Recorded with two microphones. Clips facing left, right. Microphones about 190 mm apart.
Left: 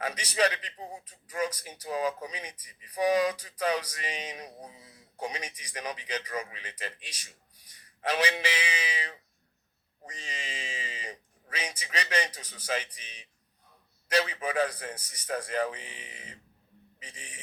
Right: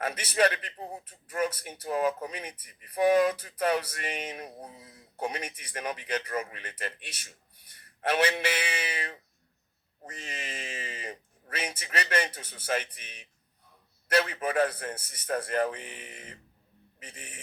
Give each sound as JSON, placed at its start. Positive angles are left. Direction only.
{"t": 0.0, "sound": "speech", "side_deg": -50}